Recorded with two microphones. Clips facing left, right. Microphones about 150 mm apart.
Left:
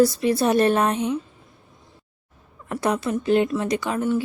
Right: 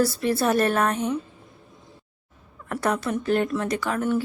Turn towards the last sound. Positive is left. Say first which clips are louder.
# left 1 dB
turn(degrees=15)  # may be behind; listen again after turning